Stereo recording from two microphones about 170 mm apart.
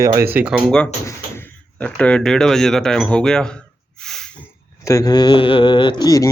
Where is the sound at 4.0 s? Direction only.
5° left (ahead or behind).